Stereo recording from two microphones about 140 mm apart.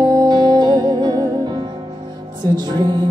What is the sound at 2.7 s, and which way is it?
Music, 30° right (ahead or behind).